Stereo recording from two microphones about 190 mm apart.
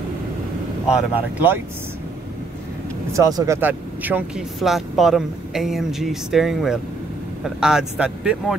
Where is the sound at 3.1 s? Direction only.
20° right (ahead or behind).